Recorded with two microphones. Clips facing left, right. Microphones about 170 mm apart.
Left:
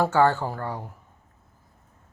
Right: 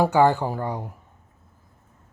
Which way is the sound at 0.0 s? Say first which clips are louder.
Right 2 dB; 15° right (ahead or behind).